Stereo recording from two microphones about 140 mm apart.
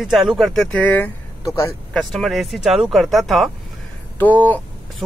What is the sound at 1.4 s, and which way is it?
Speech, 25° left (ahead or behind).